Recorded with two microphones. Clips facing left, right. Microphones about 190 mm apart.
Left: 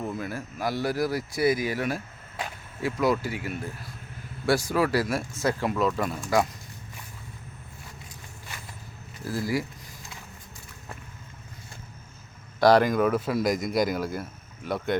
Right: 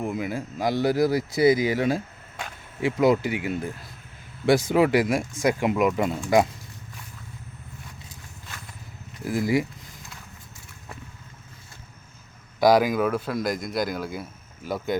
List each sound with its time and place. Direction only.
0.0 s speech: 15° right (ahead or behind)
9.2 s speech: 20° right (ahead or behind)
12.5 s speech: 5° right (ahead or behind)